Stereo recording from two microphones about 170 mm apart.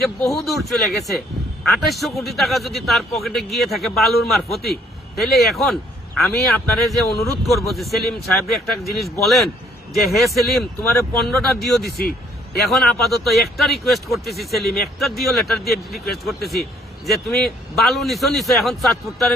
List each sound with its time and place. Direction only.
0.0 s a man's voice: centre (ahead or behind)
11.9 s speech: 65° left (ahead or behind)
12.7 s speech: centre (ahead or behind)